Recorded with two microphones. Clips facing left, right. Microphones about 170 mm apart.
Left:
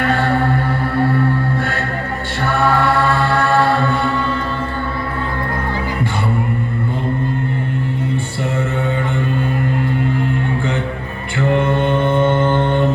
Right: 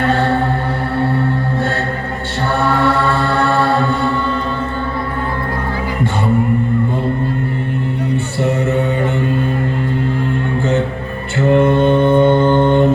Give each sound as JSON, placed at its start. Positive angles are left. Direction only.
{"t": 3.2, "sound": "mantra", "side_deg": -20}
{"t": 11.5, "sound": "mantra", "side_deg": -15}